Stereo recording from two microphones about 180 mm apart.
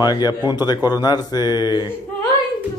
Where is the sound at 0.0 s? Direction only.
20° left (ahead or behind).